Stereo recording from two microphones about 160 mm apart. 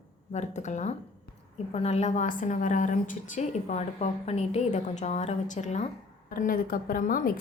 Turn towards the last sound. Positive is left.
turn(degrees=60)  # may be behind; listen again after turning